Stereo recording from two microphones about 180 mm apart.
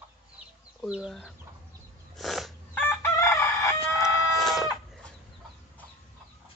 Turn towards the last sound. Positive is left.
turn(degrees=0)  # may be behind; listen again after turning